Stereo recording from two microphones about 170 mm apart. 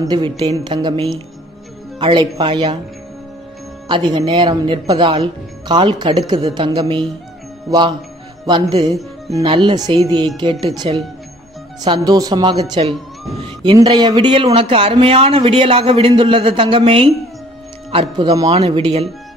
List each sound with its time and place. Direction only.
0.0 s a woman's voice: 25° right (ahead or behind)
3.9 s a woman's voice: 25° right (ahead or behind)
8.5 s a woman's voice: 25° right (ahead or behind)
18.1 s a woman's voice: 25° right (ahead or behind)
18.5 s speech: 35° right (ahead or behind)